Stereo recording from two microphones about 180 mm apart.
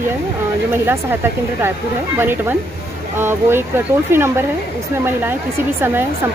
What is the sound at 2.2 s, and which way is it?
Speech, 10° right (ahead or behind).